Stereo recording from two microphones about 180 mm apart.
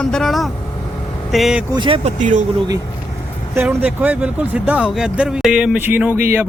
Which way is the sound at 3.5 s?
10° right (ahead or behind).